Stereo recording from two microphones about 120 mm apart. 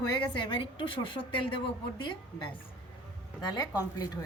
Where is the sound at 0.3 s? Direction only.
45° left (ahead or behind).